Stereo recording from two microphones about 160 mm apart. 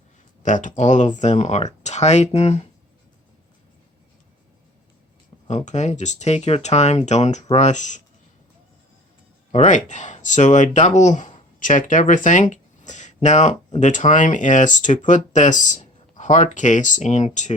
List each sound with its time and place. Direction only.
0.4 s speech: 50° left (ahead or behind)
5.5 s speech: 45° left (ahead or behind)
9.5 s speech: 50° left (ahead or behind)